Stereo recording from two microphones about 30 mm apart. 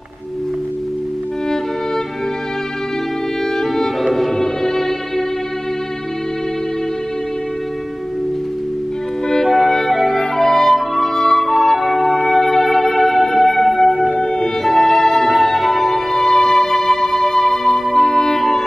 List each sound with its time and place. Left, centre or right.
3.7 s violin: centre
9.7 s music: centre
14.2 s music: left